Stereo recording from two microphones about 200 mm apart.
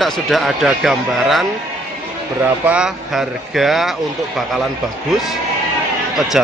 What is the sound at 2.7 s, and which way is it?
Speech, centre (ahead or behind).